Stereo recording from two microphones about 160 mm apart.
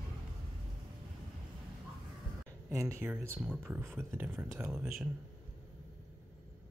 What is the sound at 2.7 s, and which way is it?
Speech, 15° right (ahead or behind).